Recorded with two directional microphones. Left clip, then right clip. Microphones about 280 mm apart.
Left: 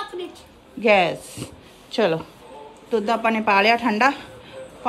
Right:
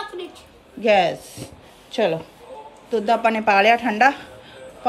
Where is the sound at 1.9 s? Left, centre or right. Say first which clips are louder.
Even; left.